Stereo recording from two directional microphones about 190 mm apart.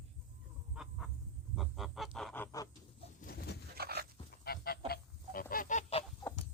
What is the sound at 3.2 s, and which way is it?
Bird, 55° left (ahead or behind).